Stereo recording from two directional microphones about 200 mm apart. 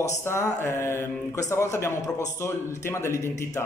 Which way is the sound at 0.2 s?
15° left (ahead or behind).